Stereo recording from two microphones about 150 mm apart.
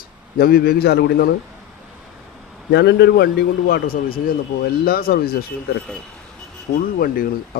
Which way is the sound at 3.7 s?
85° left.